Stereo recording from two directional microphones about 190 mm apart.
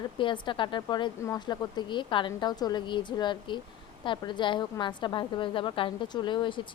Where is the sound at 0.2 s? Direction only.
25° left (ahead or behind).